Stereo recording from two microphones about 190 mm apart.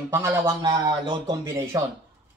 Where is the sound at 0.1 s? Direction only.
15° right (ahead or behind).